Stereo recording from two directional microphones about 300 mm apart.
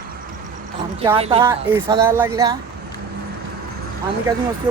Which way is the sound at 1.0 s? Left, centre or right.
Centre.